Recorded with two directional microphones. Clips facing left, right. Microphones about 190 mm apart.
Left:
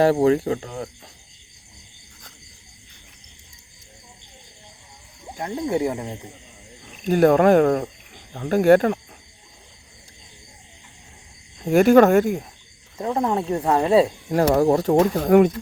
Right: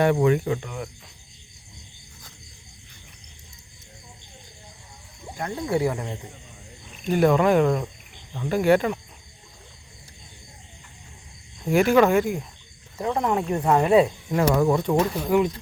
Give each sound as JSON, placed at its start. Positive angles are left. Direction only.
{"t": 0.0, "sound": "speech", "side_deg": 30}
{"t": 5.4, "sound": "speech", "side_deg": 20}
{"t": 7.0, "sound": "speech", "side_deg": 45}
{"t": 11.6, "sound": "speech", "side_deg": 45}
{"t": 13.0, "sound": "speech", "side_deg": 30}